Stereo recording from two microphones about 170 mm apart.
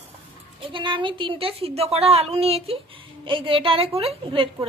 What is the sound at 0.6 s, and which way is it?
A woman's voice, 30° right (ahead or behind).